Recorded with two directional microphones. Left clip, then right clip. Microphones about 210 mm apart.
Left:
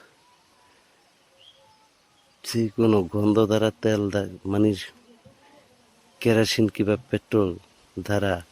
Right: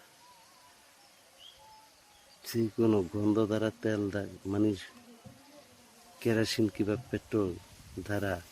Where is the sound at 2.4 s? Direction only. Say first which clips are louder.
Left 7 dB; 50° left (ahead or behind).